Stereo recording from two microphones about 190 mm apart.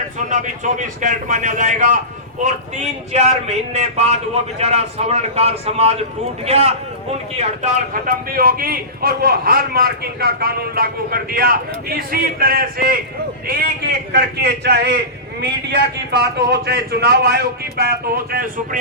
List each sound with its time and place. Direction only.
0.3 s speech: 40° right (ahead or behind)
8.3 s a man's voice: 50° right (ahead or behind)
14.1 s a man's voice: 60° right (ahead or behind)